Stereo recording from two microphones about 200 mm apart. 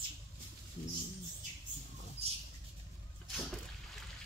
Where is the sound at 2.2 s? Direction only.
30° right (ahead or behind).